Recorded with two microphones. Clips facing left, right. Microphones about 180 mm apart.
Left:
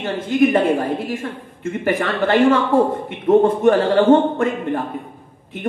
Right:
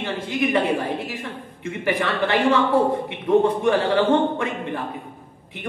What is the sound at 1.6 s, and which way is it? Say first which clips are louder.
A man's voice: left 4 dB; 45° left (ahead or behind).